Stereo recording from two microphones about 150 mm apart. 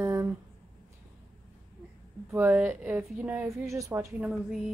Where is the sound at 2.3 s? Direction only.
10° right (ahead or behind).